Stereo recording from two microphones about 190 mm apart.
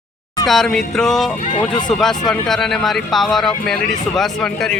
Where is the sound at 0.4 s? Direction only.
Centre (ahead or behind).